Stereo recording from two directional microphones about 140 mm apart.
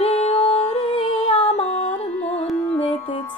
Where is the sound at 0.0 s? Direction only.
50° left (ahead or behind).